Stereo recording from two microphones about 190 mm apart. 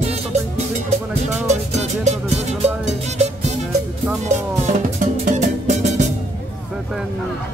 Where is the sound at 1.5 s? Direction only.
35° right (ahead or behind).